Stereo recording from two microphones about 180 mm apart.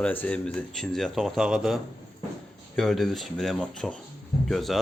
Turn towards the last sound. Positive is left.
turn(degrees=0)  # may be behind; listen again after turning